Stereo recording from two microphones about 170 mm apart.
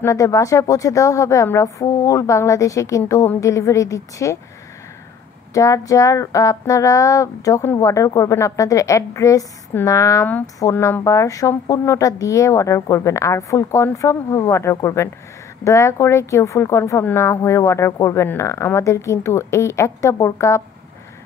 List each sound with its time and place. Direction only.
0.0 s speech: 20° left (ahead or behind)
5.5 s speech: 20° left (ahead or behind)